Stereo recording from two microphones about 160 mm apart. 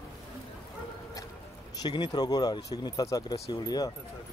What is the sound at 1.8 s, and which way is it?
Speech, 25° left (ahead or behind).